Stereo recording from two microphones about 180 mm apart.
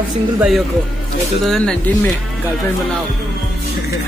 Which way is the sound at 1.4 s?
5° left (ahead or behind).